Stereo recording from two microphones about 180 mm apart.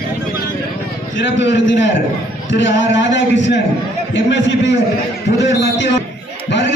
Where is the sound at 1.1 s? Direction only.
80° left.